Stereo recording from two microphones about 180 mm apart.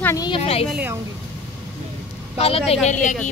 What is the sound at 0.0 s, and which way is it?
Speech, 15° left (ahead or behind).